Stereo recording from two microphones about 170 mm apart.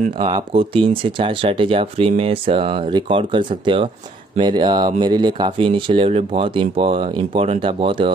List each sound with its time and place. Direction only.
0.3 s speech: 30° right (ahead or behind)